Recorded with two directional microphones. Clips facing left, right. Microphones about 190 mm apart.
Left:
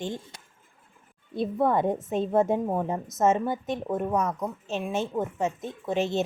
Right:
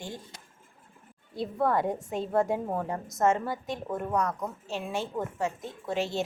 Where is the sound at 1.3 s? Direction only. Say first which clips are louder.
Left 3 dB; 20° left (ahead or behind).